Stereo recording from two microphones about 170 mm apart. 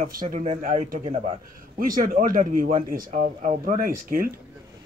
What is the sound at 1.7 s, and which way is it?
A man's voice, 55° right (ahead or behind).